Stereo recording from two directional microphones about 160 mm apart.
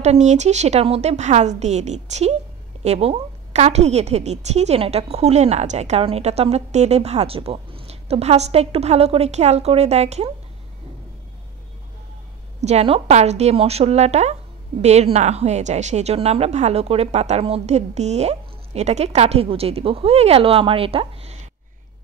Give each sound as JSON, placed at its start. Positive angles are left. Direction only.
{"t": 0.0, "sound": "a woman's voice", "side_deg": -45}
{"t": 12.5, "sound": "a woman's voice", "side_deg": -40}